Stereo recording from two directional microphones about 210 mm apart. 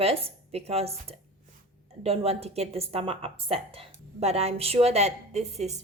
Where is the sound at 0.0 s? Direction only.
30° right (ahead or behind).